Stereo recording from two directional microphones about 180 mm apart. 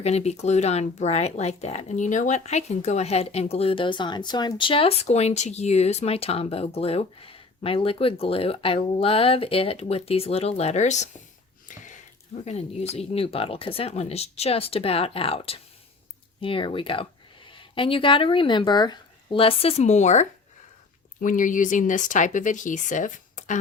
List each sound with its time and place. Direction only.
0.0 s speech: 35° left (ahead or behind)
11.7 s a sound: 45° left (ahead or behind)
12.5 s speech: 35° left (ahead or behind)